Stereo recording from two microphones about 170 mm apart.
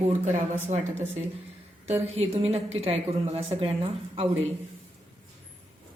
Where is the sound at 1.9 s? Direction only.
35° right (ahead or behind).